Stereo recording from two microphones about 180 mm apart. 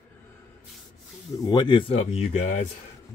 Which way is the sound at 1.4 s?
25° left (ahead or behind).